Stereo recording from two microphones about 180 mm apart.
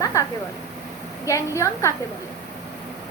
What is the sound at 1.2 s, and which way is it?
Speech, 15° left (ahead or behind).